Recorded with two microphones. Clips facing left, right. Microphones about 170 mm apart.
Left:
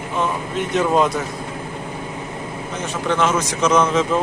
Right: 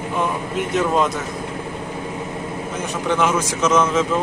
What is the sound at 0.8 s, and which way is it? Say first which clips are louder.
Speech: left 2 dB; centre (ahead or behind).